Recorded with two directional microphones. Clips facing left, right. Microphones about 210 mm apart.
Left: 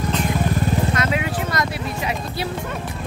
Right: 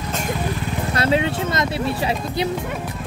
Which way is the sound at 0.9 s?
30° right (ahead or behind).